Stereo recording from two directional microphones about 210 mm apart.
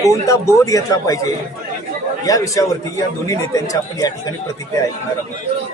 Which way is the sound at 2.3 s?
15° left (ahead or behind).